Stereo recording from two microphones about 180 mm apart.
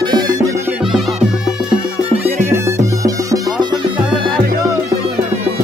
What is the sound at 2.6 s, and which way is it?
Music, 15° right (ahead or behind).